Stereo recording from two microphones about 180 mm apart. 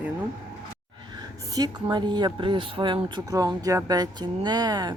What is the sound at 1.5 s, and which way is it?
Speech, 20° right (ahead or behind).